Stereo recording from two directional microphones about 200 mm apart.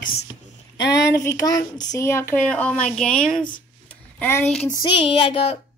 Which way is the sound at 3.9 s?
10° left (ahead or behind).